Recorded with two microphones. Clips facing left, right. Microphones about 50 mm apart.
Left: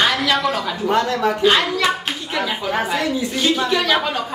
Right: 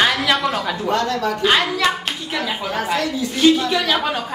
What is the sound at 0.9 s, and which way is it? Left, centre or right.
Speech, centre.